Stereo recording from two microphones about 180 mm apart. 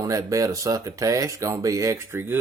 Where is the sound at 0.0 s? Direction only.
20° right (ahead or behind).